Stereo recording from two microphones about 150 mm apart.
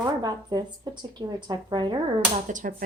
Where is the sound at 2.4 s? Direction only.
60° right (ahead or behind).